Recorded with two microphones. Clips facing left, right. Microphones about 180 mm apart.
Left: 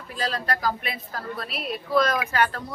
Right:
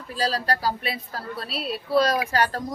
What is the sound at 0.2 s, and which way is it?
A woman's voice, 35° right (ahead or behind).